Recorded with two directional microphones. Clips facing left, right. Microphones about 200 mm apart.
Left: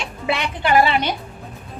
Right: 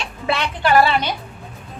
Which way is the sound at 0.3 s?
15° left (ahead or behind).